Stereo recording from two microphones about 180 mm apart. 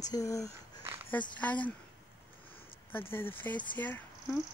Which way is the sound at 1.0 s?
10° left (ahead or behind).